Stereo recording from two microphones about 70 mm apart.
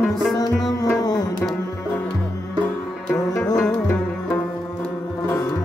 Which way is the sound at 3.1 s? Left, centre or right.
Left.